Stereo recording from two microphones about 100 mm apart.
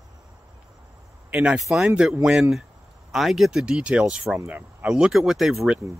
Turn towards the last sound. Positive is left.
turn(degrees=-5)  # may be behind; listen again after turning